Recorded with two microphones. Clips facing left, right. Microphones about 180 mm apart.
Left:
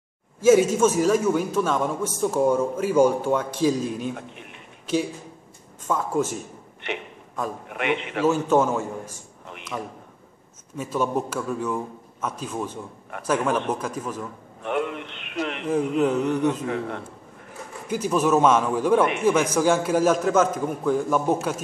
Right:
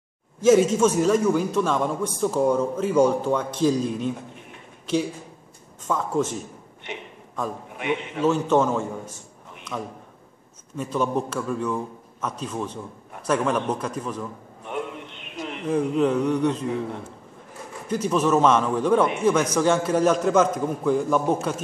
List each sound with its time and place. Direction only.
0.4 s a man's voice: 5° left (ahead or behind)
5.9 s a man's voice: 5° left (ahead or behind)
6.8 s a man's voice: 70° left (ahead or behind)
8.3 s a man's voice: 5° left (ahead or behind)
14.6 s a sound: 70° left (ahead or behind)
16.0 s a man's voice: 5° left (ahead or behind)
16.6 s a man's voice: 70° left (ahead or behind)
17.8 s a man's voice: 10° left (ahead or behind)